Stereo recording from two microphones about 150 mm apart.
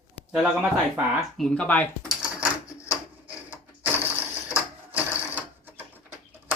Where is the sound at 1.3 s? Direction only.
5° left (ahead or behind).